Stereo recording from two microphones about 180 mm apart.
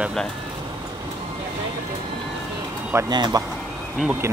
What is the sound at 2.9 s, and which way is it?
Speech, 20° right (ahead or behind).